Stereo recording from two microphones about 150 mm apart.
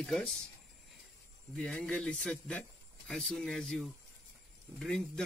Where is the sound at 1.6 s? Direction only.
5° left (ahead or behind).